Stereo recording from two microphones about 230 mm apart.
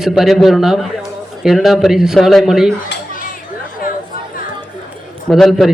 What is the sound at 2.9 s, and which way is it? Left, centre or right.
Dishes, left.